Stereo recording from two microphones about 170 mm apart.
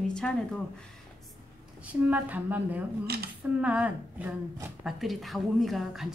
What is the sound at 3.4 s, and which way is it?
A woman's voice, 5° right (ahead or behind).